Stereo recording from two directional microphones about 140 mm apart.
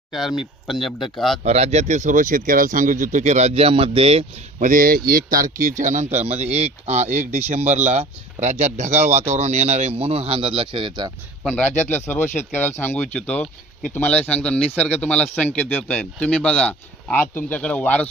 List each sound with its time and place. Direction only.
0.1 s speech: centre (ahead or behind)
1.5 s speech: 50° right (ahead or behind)
4.6 s speech: 85° right
5.6 s speech: 65° right (ahead or behind); by 11.1 s 35° right (ahead or behind)
11.4 s speech: 10° left (ahead or behind)